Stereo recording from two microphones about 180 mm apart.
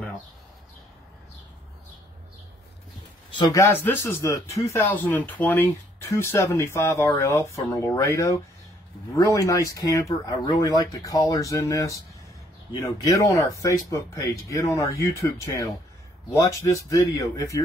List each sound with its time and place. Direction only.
3.3 s speech: 15° left (ahead or behind)